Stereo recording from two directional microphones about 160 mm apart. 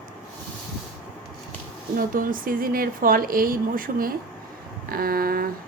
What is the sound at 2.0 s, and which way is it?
Speech, 60° right (ahead or behind).